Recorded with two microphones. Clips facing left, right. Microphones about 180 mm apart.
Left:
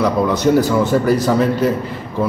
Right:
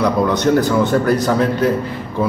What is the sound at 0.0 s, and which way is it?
Speech, 5° left (ahead or behind).